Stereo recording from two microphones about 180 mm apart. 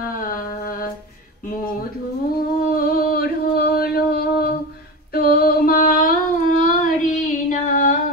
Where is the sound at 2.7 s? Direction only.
55° left (ahead or behind).